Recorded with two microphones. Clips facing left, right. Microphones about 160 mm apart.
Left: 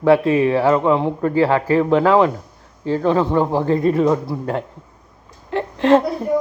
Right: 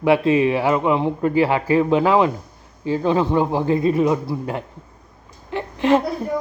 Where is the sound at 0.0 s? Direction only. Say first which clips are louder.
Left 2 dB; 20° right (ahead or behind).